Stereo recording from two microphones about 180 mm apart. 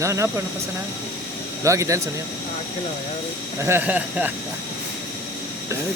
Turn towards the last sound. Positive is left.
turn(degrees=-10)  # may be behind; listen again after turning